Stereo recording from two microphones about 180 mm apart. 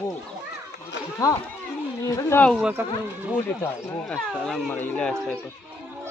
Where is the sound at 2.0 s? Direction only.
10° left (ahead or behind).